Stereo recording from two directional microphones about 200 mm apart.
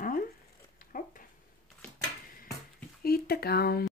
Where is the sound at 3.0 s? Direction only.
50° left (ahead or behind).